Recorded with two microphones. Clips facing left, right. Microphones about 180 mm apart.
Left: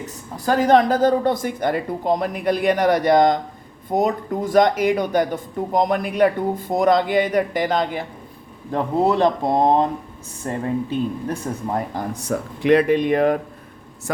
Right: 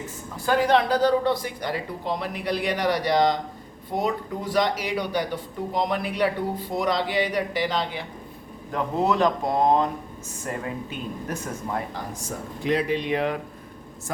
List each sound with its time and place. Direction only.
0.0 s speech: 40° left (ahead or behind)
8.7 s speech: 30° left (ahead or behind)
11.9 s speech: 65° left (ahead or behind); by 13.4 s 50° left (ahead or behind)